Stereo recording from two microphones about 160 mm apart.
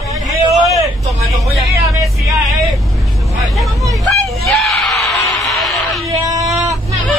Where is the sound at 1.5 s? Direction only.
Centre (ahead or behind).